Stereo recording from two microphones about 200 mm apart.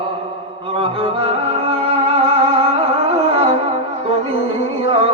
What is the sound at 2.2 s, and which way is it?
Music, 30° right (ahead or behind).